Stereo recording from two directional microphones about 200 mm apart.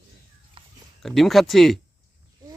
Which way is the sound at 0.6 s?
25° right (ahead or behind).